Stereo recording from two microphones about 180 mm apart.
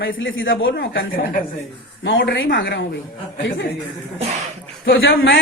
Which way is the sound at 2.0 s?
85° left.